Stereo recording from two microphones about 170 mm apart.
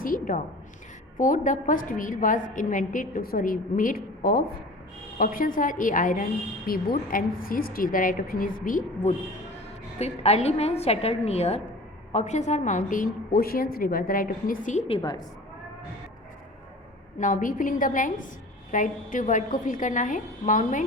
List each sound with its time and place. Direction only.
0.0 s a sound: 55° left (ahead or behind)
1.2 s a woman's voice: 50° left (ahead or behind)
10.0 s a woman's voice: 40° left (ahead or behind)
17.2 s a woman's voice: 50° left (ahead or behind)